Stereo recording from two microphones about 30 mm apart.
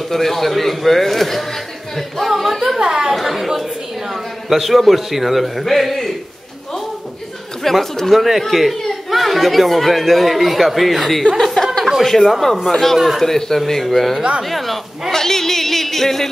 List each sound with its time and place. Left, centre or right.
0.1 s speech: centre
2.8 s a woman's voice: right
3.1 s a woman's voice: centre
4.5 s speech: centre
7.7 s speech: centre
8.1 s speech: centre
11.4 s chuckle: centre
12.2 s speech: centre
14.5 s a sound: centre
15.1 s a sound: centre